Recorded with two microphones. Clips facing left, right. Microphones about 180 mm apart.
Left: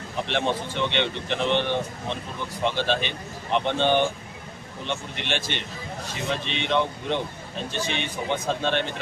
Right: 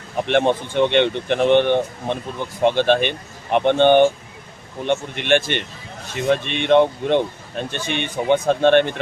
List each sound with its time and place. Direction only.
0.3 s speech: 55° right (ahead or behind)